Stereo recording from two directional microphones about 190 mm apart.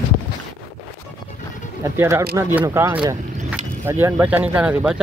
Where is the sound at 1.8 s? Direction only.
15° right (ahead or behind).